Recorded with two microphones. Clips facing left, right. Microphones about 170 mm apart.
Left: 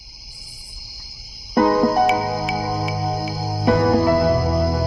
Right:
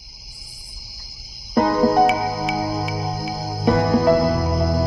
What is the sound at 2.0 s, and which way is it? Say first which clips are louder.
Music: even; centre (ahead or behind).